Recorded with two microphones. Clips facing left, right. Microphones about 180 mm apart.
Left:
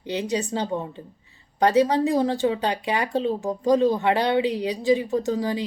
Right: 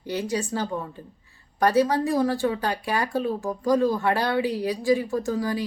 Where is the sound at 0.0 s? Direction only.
20° left (ahead or behind).